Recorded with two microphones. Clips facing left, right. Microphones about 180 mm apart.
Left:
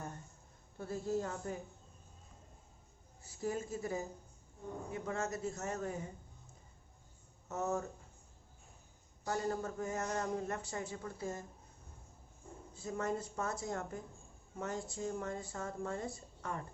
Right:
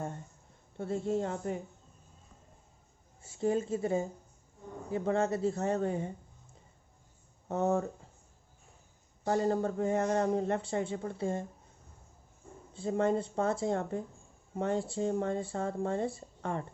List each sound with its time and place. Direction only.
0.8 s speech: 25° right (ahead or behind)
3.2 s speech: 25° right (ahead or behind)
7.4 s speech: 30° right (ahead or behind)
9.2 s speech: 30° right (ahead or behind)
12.7 s speech: 30° right (ahead or behind)